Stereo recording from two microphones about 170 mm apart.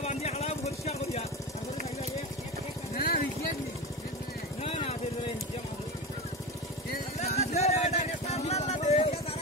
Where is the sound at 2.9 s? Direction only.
60° left (ahead or behind).